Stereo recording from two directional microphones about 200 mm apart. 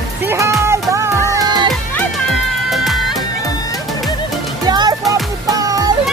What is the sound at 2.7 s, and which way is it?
Music, centre (ahead or behind).